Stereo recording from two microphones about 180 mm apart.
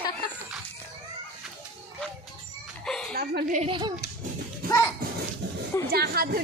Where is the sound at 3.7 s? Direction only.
25° right (ahead or behind).